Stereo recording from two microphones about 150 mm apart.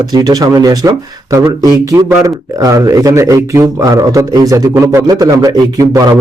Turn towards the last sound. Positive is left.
turn(degrees=-25)  # may be behind; listen again after turning